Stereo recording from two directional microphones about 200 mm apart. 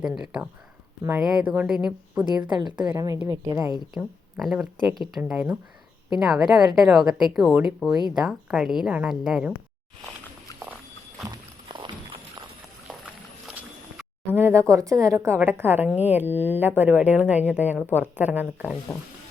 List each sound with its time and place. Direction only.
0.0 s speech: 5° right (ahead or behind)
2.8 s speech: 15° right (ahead or behind)
3.9 s speech: centre (ahead or behind)
11.3 s walk: 25° right (ahead or behind)
13.5 s speech: 5° right (ahead or behind)